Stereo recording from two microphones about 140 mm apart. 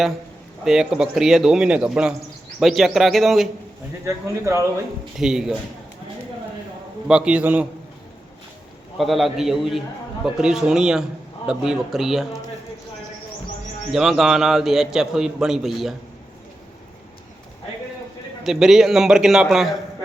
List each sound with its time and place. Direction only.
0.6 s a man's voice: 5° right (ahead or behind)
4.0 s speech: 20° right (ahead or behind)
5.1 s a man's voice: 5° right (ahead or behind)
7.1 s a man's voice: 5° right (ahead or behind)
9.0 s a man's voice: centre (ahead or behind)
13.9 s a man's voice: centre (ahead or behind)
18.4 s a man's voice: centre (ahead or behind)